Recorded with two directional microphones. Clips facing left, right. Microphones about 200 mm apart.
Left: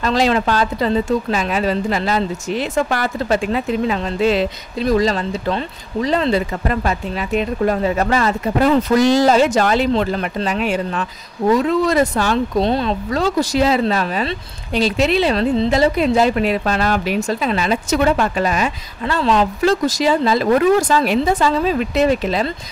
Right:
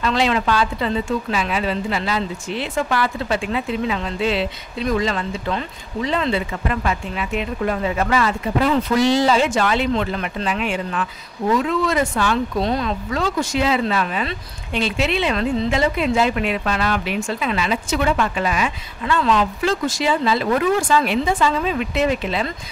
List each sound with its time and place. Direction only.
0.0 s speech: 40° left (ahead or behind)